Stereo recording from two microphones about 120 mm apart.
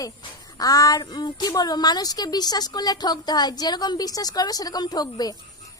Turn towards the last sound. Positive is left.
turn(degrees=35)  # may be behind; listen again after turning